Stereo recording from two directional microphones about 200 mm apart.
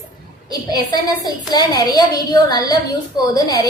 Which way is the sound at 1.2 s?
20° left (ahead or behind).